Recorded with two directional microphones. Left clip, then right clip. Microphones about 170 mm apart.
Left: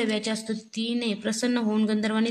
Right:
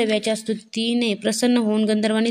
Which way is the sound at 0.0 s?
25° right (ahead or behind).